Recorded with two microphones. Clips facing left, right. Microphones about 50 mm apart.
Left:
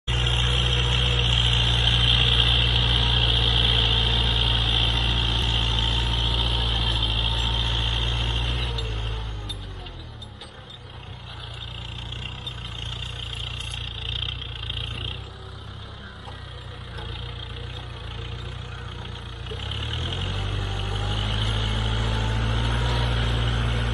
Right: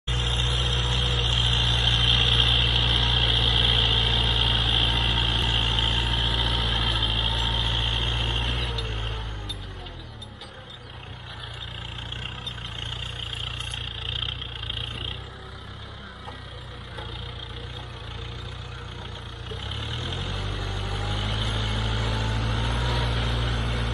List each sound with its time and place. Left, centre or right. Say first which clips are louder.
0.1 s vehicle: left 3 dB; left
1.9 s vehicle: even; centre
8.8 s vehicle: even; right
19.8 s vehicle: left 1 dB; left
20.8 s vehicle: even; centre
21.4 s vehicle: left 1 dB; left